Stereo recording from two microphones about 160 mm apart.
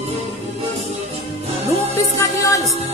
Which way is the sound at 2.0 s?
20° left (ahead or behind).